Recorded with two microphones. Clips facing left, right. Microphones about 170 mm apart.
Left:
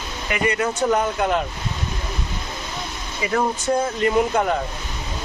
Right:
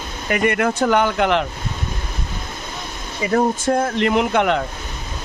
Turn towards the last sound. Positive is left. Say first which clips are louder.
# right 2 dB
turn(degrees=-75)  # may be behind; listen again after turning